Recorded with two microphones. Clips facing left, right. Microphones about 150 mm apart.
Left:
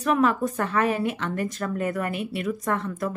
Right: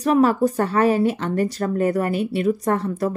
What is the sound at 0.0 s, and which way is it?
Speech, 35° right (ahead or behind).